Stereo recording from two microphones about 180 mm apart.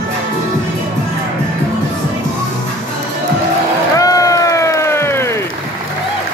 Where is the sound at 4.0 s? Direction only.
20° left (ahead or behind).